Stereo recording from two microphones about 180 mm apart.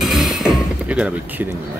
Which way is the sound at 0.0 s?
Centre (ahead or behind).